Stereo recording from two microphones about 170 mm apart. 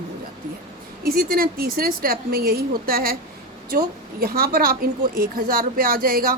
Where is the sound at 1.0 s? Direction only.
60° right (ahead or behind).